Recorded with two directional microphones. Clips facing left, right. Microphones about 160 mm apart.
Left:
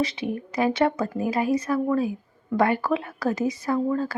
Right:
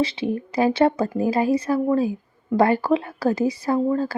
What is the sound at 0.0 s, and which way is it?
Speech, 30° right (ahead or behind).